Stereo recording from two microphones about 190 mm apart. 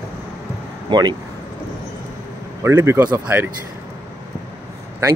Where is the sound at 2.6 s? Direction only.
10° right (ahead or behind).